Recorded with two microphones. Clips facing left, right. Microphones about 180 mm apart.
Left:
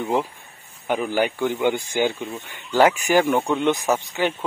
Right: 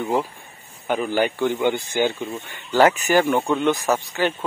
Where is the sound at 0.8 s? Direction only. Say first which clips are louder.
Right 1 dB; 10° left (ahead or behind).